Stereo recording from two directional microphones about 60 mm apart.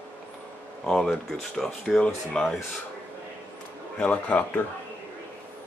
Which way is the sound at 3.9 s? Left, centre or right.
Left.